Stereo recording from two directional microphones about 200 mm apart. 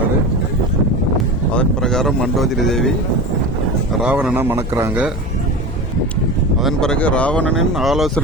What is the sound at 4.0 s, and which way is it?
Speech, 5° right (ahead or behind).